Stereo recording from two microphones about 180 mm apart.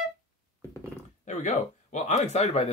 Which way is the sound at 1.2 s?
45° left (ahead or behind).